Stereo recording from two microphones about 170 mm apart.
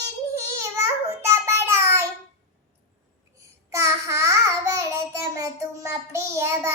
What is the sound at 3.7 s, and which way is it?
Babbling, 15° right (ahead or behind).